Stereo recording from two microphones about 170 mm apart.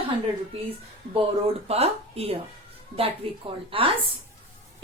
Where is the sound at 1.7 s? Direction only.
35° right (ahead or behind).